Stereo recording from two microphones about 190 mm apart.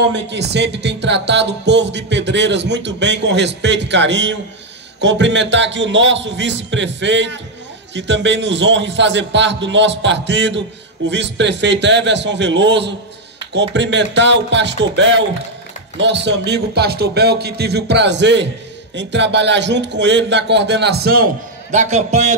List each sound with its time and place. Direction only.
0.1 s music: 65° right (ahead or behind)
5.0 s a man's voice: 70° right (ahead or behind)
16.0 s music: 65° right (ahead or behind)
21.7 s a man's voice: 35° right (ahead or behind)